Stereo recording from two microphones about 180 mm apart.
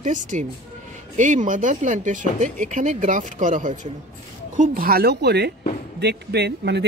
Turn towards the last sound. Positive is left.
turn(degrees=-70)  # may be behind; listen again after turning